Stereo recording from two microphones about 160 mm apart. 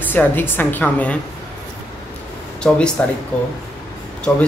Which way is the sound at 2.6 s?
5° left (ahead or behind).